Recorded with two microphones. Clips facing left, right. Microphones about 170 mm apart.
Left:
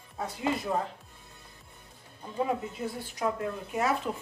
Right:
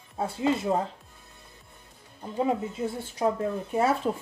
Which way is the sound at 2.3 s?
25° right (ahead or behind).